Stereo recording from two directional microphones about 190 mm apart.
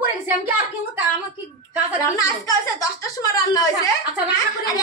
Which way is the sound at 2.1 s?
20° left (ahead or behind).